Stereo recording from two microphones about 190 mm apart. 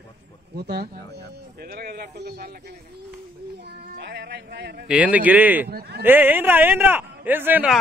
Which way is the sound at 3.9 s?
60° right (ahead or behind).